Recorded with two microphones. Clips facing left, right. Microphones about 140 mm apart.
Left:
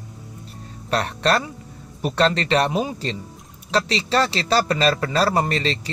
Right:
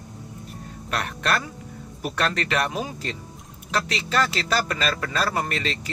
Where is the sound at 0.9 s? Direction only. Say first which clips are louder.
Left 5 dB; 35° left (ahead or behind).